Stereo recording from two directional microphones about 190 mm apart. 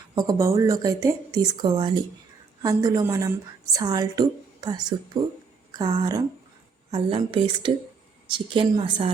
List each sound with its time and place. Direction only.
0.2 s a woman's voice: 20° right (ahead or behind)